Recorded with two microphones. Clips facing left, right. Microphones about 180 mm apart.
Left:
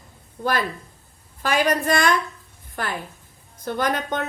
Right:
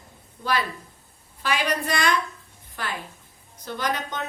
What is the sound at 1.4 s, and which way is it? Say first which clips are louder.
A woman's voice: left 5 dB; 45° left (ahead or behind).